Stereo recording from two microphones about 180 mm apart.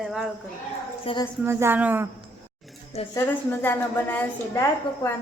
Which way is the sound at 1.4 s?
10° right (ahead or behind).